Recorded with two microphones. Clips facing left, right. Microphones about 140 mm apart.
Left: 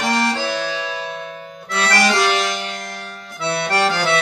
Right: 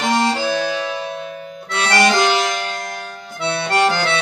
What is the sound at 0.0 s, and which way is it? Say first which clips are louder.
Music: right 2 dB; 25° right (ahead or behind).